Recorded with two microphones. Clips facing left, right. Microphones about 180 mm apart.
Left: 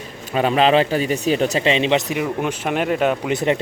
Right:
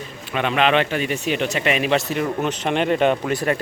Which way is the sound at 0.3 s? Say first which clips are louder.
Left 3 dB; 35° left (ahead or behind).